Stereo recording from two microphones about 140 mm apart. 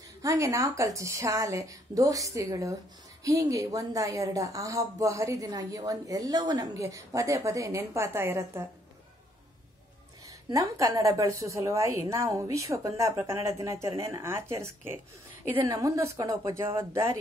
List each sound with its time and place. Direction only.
0.2 s a woman's voice: 20° right (ahead or behind)
10.5 s a woman's voice: 25° right (ahead or behind)